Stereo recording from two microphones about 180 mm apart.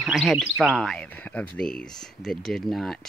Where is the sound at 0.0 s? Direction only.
Centre (ahead or behind).